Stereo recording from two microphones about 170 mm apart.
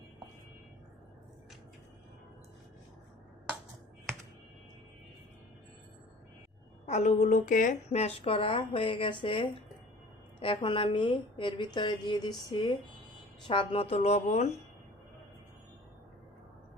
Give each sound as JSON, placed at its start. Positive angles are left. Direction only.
{"t": 6.8, "sound": "a woman's voice", "side_deg": 40}